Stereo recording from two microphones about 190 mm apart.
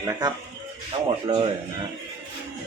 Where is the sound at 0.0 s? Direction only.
20° right (ahead or behind).